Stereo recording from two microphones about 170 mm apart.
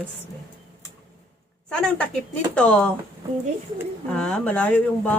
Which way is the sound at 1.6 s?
5° left (ahead or behind).